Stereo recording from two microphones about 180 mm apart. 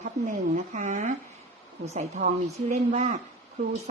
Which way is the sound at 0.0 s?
40° right (ahead or behind).